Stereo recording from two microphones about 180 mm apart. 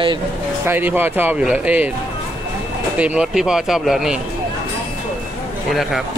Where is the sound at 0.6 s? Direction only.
10° right (ahead or behind).